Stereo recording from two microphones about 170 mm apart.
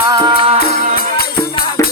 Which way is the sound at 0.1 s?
25° right (ahead or behind).